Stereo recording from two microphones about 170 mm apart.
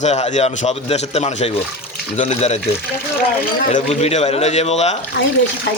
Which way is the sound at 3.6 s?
45° left (ahead or behind).